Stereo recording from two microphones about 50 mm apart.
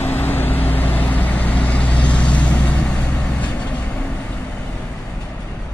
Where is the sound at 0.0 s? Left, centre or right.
Left.